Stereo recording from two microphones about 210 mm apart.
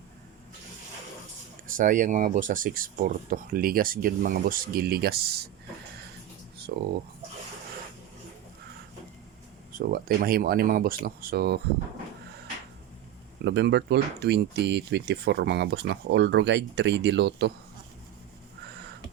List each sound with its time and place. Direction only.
1.6 s speech: 40° right (ahead or behind)
6.7 s speech: 45° right (ahead or behind)
9.7 s speech: 45° right (ahead or behind)
13.4 s speech: 55° right (ahead or behind)